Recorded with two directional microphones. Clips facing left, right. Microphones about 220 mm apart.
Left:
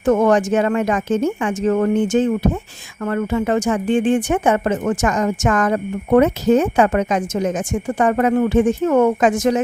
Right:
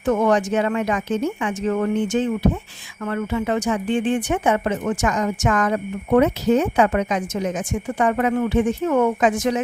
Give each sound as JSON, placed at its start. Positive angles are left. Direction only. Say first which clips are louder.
{"t": 0.0, "sound": "speech", "louder": "left 4 dB", "side_deg": 45}